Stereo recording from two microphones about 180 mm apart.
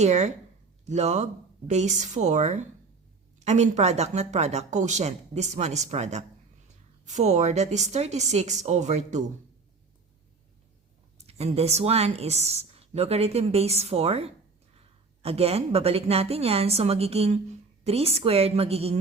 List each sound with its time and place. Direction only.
0.0 s a woman's voice: 40° right (ahead or behind)
11.3 s a woman's voice: 35° right (ahead or behind)